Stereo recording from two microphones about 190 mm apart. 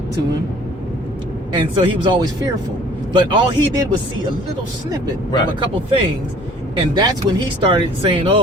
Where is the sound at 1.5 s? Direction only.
25° right (ahead or behind).